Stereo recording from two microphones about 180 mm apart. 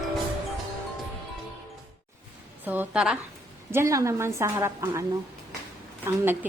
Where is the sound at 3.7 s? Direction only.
15° right (ahead or behind).